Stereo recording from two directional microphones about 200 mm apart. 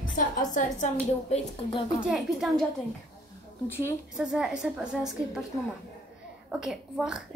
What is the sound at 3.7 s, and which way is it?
Speech, 15° left (ahead or behind).